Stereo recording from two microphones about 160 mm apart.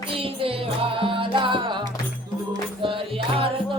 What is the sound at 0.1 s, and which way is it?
Music, 35° right (ahead or behind).